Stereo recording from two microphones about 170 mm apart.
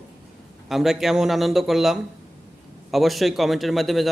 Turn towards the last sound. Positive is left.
turn(degrees=0)  # may be behind; listen again after turning